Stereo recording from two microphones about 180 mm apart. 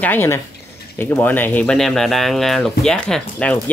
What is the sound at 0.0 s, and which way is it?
Speech, 10° left (ahead or behind).